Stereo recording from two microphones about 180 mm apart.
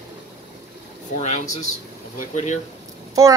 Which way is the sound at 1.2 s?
40° left (ahead or behind).